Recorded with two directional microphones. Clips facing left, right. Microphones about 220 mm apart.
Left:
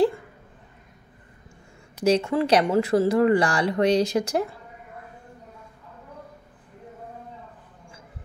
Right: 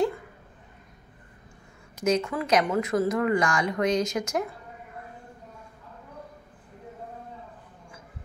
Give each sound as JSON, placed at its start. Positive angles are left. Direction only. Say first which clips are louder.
{"t": 2.0, "sound": "speech", "louder": "left 4 dB", "side_deg": 30}